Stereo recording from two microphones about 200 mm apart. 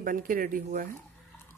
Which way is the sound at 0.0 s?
45° right (ahead or behind).